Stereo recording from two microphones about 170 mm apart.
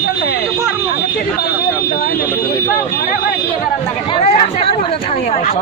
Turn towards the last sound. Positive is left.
turn(degrees=35)  # may be behind; listen again after turning